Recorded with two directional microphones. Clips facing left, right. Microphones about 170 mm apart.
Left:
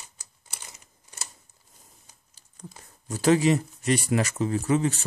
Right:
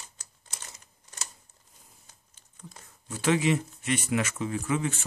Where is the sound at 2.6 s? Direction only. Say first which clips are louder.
Left 4 dB; 40° left (ahead or behind).